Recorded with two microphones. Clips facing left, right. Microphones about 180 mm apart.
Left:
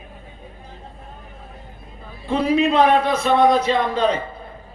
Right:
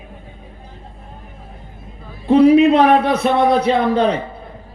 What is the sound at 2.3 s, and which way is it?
A man's voice, 65° right (ahead or behind).